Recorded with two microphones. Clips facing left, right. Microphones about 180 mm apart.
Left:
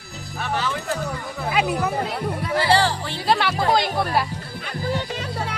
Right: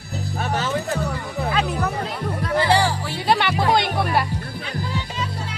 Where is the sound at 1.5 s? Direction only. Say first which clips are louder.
Left 2 dB; 10° left (ahead or behind).